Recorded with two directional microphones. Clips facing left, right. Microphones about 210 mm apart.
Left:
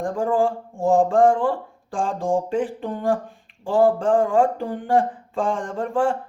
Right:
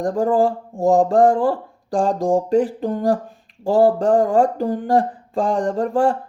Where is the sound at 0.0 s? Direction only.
40° right (ahead or behind).